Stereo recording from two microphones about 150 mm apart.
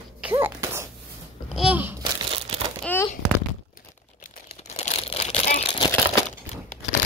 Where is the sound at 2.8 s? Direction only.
10° left (ahead or behind).